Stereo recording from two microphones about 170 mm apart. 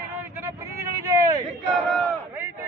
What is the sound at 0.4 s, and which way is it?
Vehicle, 15° right (ahead or behind).